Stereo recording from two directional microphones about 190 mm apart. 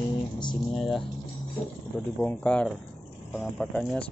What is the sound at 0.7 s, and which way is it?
Speech, centre (ahead or behind).